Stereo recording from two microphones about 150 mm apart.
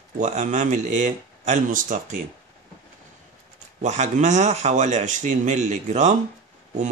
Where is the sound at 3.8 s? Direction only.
50° right (ahead or behind).